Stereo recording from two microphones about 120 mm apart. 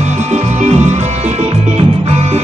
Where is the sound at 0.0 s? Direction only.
70° right (ahead or behind).